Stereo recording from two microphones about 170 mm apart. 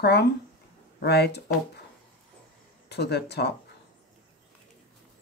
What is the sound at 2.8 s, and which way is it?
Speech, 75° left (ahead or behind).